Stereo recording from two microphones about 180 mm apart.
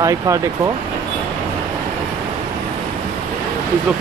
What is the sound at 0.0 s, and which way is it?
Speech, 15° right (ahead or behind).